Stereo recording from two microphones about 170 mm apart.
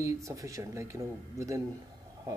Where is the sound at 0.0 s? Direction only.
20° right (ahead or behind).